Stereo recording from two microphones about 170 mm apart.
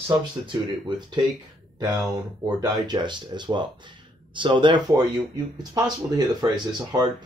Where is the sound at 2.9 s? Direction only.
25° right (ahead or behind).